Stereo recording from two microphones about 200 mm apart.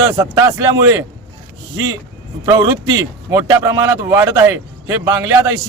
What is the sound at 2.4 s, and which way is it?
A man's voice, 20° right (ahead or behind).